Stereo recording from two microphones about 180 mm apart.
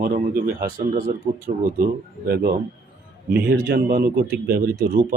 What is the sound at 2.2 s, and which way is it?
A man's voice, 55° right (ahead or behind).